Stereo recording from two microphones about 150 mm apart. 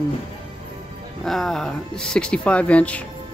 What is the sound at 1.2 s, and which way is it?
Speech, centre (ahead or behind).